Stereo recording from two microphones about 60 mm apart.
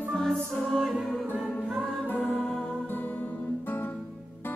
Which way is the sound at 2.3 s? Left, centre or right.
Centre.